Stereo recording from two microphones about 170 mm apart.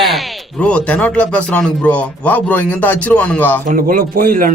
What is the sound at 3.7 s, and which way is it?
Speech, 55° right (ahead or behind).